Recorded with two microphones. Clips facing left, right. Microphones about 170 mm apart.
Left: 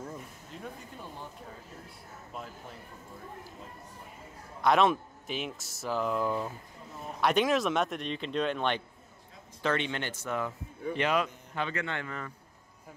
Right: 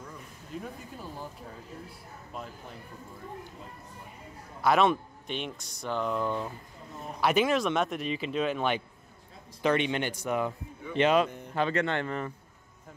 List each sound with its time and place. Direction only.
4.6 s a man's voice: centre (ahead or behind); by 11.2 s 25° right (ahead or behind)
11.5 s speech: 35° right (ahead or behind)